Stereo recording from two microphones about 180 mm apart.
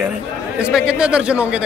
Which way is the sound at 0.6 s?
5° right (ahead or behind).